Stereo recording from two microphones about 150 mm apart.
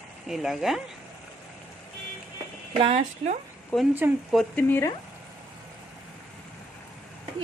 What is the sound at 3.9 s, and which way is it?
Speech, 15° right (ahead or behind).